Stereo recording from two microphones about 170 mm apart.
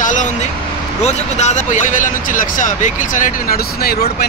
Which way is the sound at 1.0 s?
40° left (ahead or behind).